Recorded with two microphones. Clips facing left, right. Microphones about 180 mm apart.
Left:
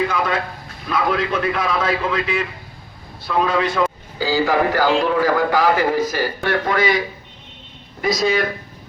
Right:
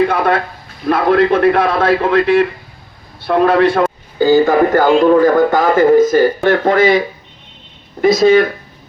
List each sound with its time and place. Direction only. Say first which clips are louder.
0.1 s a man's voice: right 7 dB; 55° right (ahead or behind)
8.0 s a man's voice: right 10 dB; 50° right (ahead or behind)